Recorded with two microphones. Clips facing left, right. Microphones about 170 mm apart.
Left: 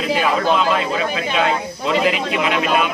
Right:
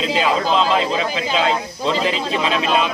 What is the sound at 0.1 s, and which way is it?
Speech, 25° right (ahead or behind).